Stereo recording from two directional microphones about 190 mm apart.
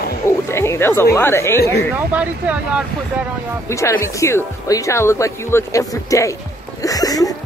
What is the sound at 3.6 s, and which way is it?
Speech, 15° left (ahead or behind).